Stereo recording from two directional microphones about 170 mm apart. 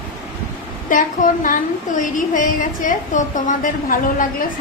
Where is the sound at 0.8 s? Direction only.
50° left (ahead or behind).